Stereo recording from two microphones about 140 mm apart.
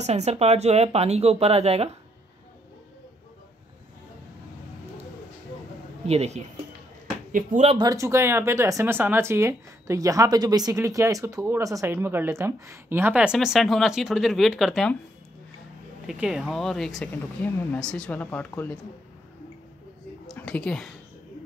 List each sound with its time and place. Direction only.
0.0 s speech: 50° right (ahead or behind)
6.0 s speech: 50° right (ahead or behind)
7.7 s a woman's voice: 25° right (ahead or behind); by 15.0 s centre (ahead or behind)
16.1 s a woman's voice: 5° right (ahead or behind)
17.1 s speech: 15° left (ahead or behind)
20.3 s a woman's voice: 10° left (ahead or behind)